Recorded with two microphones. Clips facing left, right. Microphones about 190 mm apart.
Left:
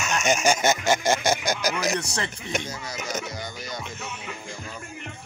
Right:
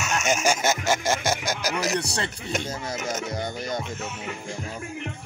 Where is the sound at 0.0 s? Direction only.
5° right (ahead or behind).